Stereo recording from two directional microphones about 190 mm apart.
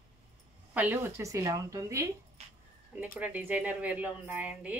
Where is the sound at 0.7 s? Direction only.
10° right (ahead or behind).